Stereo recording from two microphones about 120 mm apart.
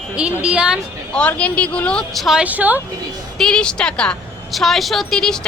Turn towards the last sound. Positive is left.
turn(degrees=5)  # may be behind; listen again after turning